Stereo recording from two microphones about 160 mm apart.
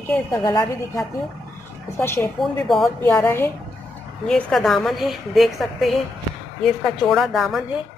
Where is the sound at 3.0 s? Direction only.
10° left (ahead or behind).